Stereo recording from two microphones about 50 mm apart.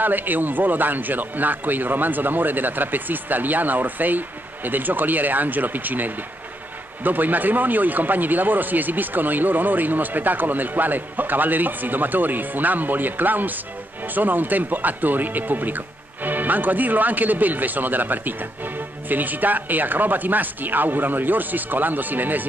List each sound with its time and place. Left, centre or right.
0.0 s speech: right